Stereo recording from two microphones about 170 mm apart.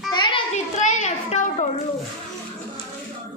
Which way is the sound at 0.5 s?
45° left (ahead or behind).